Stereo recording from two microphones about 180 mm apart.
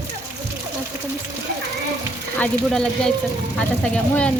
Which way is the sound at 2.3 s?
5° left (ahead or behind).